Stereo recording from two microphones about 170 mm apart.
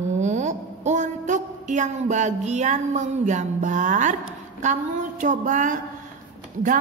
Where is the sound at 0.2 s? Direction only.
45° right (ahead or behind).